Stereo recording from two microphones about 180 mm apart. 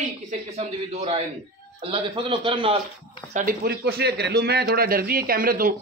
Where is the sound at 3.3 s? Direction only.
55° right (ahead or behind).